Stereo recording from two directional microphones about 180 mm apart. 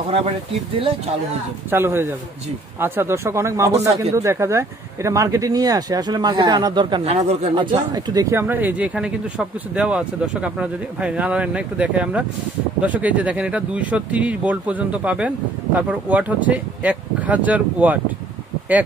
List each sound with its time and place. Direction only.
0.7 s speech: 30° right (ahead or behind)
1.7 s speech: 10° right (ahead or behind)
7.1 s speech: 35° right (ahead or behind); by 17.9 s 10° right (ahead or behind)